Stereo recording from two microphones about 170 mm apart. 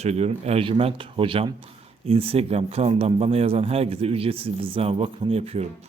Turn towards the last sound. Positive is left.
turn(degrees=-35)  # may be behind; listen again after turning